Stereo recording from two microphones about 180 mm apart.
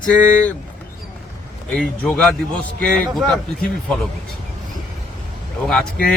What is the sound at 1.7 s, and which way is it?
Speech, 5° left (ahead or behind).